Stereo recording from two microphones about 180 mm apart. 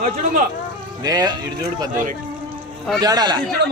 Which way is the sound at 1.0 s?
20° right (ahead or behind).